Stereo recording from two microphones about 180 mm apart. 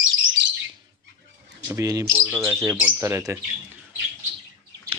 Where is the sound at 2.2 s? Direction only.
Centre (ahead or behind).